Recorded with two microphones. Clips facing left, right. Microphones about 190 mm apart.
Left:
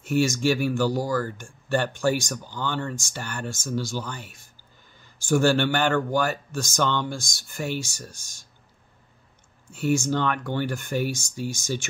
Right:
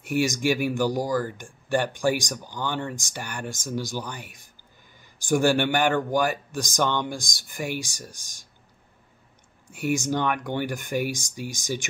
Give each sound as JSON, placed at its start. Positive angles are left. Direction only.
{"t": 0.0, "sound": "speech", "side_deg": -15}
{"t": 9.7, "sound": "speech", "side_deg": -15}